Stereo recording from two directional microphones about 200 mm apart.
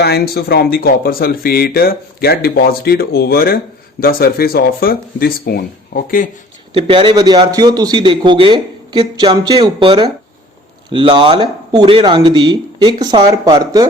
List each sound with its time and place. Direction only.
0.0 s speech: 55° left (ahead or behind)
6.7 s a man's voice: 25° right (ahead or behind)